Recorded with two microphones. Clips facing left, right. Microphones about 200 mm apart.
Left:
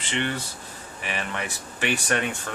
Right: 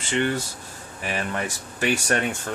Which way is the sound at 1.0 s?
40° right (ahead or behind).